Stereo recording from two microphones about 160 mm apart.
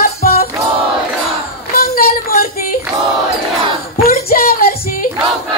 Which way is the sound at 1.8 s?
70° left (ahead or behind).